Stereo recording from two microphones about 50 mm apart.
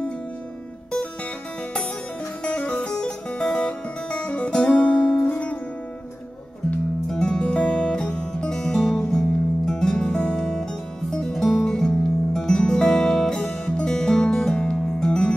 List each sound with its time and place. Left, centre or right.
2.4 s music: left
7.1 s music: centre